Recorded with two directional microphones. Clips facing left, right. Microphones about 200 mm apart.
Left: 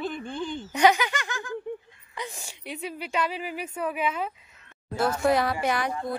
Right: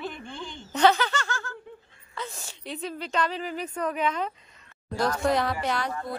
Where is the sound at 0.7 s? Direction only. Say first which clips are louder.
Even; 10° left (ahead or behind).